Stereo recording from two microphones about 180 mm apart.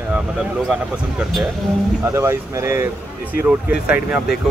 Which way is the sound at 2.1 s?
15° right (ahead or behind).